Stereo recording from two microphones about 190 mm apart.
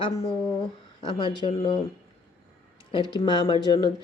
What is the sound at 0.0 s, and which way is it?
Speech, 15° left (ahead or behind).